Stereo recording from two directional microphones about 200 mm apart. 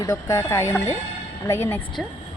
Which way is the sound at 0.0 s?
15° left (ahead or behind).